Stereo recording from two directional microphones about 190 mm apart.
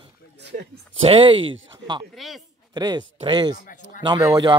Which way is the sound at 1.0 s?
25° right (ahead or behind).